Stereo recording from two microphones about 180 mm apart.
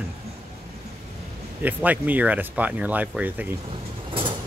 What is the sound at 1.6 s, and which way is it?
Speech, 10° right (ahead or behind).